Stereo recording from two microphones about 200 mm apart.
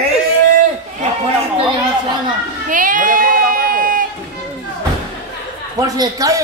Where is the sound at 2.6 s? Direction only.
40° right (ahead or behind).